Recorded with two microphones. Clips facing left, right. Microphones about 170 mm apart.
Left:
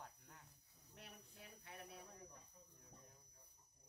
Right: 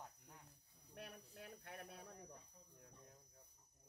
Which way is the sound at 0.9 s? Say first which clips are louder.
Right 6 dB; 55° right (ahead or behind).